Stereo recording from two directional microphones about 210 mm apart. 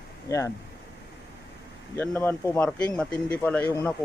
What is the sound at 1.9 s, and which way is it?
Speech, 10° left (ahead or behind).